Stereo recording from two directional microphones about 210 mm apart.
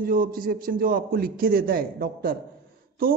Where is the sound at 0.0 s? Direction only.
45° right (ahead or behind).